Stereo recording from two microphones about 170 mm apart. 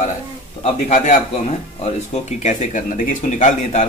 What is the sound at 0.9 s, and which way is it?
Speech, 45° left (ahead or behind).